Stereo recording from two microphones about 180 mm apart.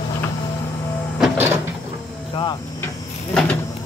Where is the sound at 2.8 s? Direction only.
5° left (ahead or behind).